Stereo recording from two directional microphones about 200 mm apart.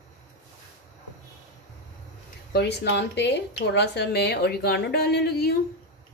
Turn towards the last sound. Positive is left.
turn(degrees=55)  # may be behind; listen again after turning